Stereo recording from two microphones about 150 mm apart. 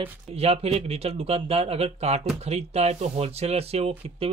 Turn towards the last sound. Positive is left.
turn(degrees=-40)  # may be behind; listen again after turning